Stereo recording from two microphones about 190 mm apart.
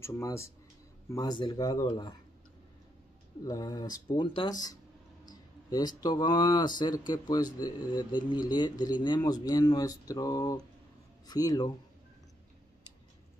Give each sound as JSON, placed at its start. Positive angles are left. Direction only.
{"t": 0.0, "sound": "speech", "side_deg": 15}
{"t": 3.4, "sound": "speech", "side_deg": 20}